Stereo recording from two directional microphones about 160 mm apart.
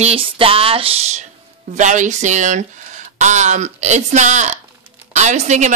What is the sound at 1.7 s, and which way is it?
Speech, 50° right (ahead or behind).